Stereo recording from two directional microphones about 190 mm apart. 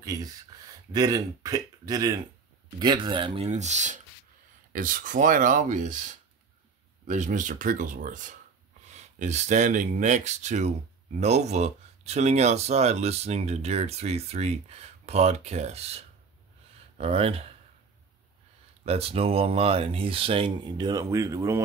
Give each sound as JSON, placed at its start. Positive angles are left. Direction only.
{"t": 0.0, "sound": "speech", "side_deg": -20}
{"t": 7.1, "sound": "speech", "side_deg": -40}
{"t": 17.0, "sound": "speech", "side_deg": -30}
{"t": 18.9, "sound": "speech", "side_deg": -30}